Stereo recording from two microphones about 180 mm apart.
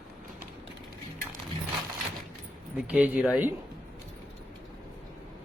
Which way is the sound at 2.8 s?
10° right (ahead or behind).